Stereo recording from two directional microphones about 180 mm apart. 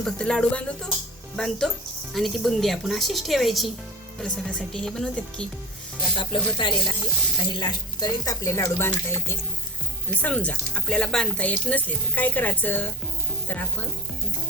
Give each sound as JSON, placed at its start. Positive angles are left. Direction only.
{"t": 0.0, "sound": "a woman's voice", "side_deg": 5}
{"t": 6.1, "sound": "speech", "side_deg": 25}